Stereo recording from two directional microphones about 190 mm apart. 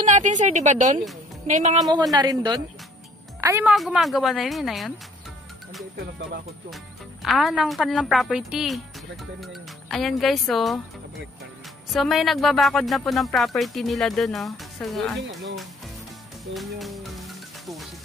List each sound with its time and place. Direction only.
0.0 s a woman's voice: 40° right (ahead or behind)
2.1 s speech: 20° right (ahead or behind)
3.7 s a woman's voice: centre (ahead or behind)
7.2 s a woman's voice: centre (ahead or behind)
16.5 s music: centre (ahead or behind)